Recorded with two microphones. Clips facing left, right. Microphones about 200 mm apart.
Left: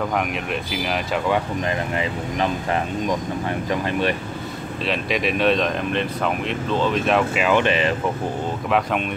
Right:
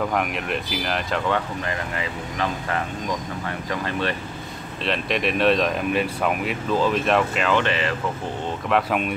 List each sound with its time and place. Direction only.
0.1 s speech: centre (ahead or behind)
2.0 s speech: 20° left (ahead or behind)
4.8 s speech: centre (ahead or behind); by 7.9 s 15° left (ahead or behind)
8.6 s speech: centre (ahead or behind)